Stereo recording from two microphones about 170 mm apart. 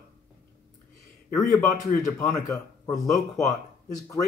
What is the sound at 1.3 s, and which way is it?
A man's voice, 20° left (ahead or behind).